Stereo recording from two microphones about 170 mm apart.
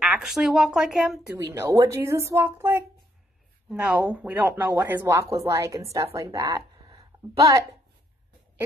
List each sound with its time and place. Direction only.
0.0 s a woman's voice: centre (ahead or behind)
1.5 s speech: 20° right (ahead or behind)
3.7 s speech: 5° right (ahead or behind)